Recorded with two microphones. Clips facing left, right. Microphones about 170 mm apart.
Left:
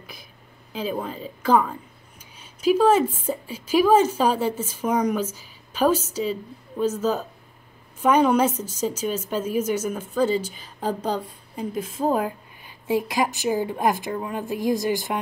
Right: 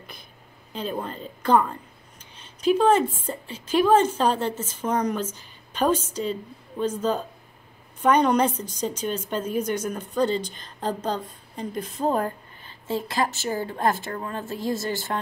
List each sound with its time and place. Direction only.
0.7 s speech: 5° left (ahead or behind)
2.3 s a sound: 10° left (ahead or behind)
3.2 s a woman's voice: 10° left (ahead or behind)